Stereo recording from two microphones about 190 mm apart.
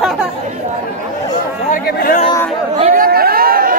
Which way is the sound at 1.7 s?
50° left (ahead or behind).